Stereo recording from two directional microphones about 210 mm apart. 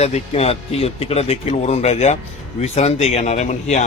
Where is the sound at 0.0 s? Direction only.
30° left (ahead or behind).